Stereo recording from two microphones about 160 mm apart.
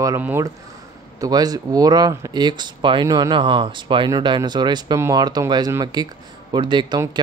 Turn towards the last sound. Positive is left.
turn(degrees=-30)  # may be behind; listen again after turning